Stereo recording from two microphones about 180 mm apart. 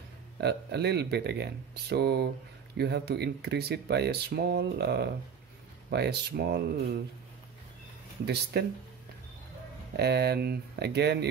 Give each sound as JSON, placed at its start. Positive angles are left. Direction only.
{"t": 0.4, "sound": "speech", "side_deg": -70}
{"t": 8.5, "sound": "speech", "side_deg": -70}
{"t": 9.9, "sound": "speech", "side_deg": -65}